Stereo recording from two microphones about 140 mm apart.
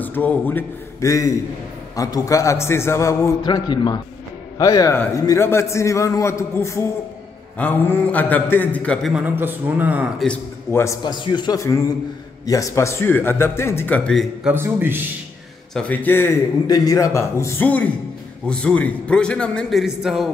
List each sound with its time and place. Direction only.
0.0 s a man's voice: 10° left (ahead or behind)
3.4 s a man's voice: 30° left (ahead or behind); by 9.1 s 10° left (ahead or behind)
9.4 s speech: 15° right (ahead or behind)
10.2 s a man's voice: 15° left (ahead or behind)
11.1 s speech: 35° left (ahead or behind); by 14.2 s 10° left (ahead or behind)
14.5 s speech: 15° right (ahead or behind)
15.7 s speech: 10° left (ahead or behind)
16.6 s a man's voice: 25° left (ahead or behind); by 20.2 s centre (ahead or behind)